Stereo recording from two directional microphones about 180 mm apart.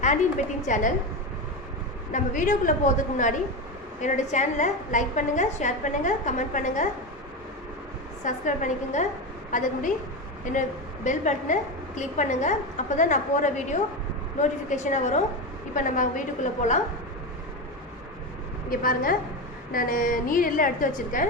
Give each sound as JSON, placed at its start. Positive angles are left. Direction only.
{"t": 0.6, "sound": "a woman's voice", "side_deg": 45}
{"t": 2.1, "sound": "a woman's voice", "side_deg": 45}
{"t": 8.2, "sound": "a woman's voice", "side_deg": 45}
{"t": 11.0, "sound": "a woman's voice", "side_deg": 45}
{"t": 18.7, "sound": "a woman's voice", "side_deg": 50}